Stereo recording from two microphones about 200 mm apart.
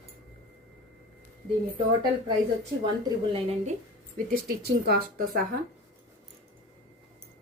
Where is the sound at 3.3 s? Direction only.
30° right (ahead or behind).